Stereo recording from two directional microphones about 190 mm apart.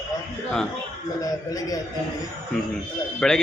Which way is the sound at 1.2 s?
20° left (ahead or behind).